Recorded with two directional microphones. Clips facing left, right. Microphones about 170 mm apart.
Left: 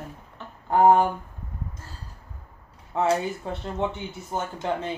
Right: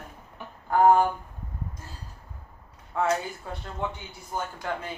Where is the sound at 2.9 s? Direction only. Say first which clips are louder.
Left 3 dB; 25° left (ahead or behind).